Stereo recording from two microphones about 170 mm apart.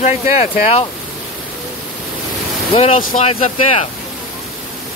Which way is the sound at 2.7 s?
40° left (ahead or behind).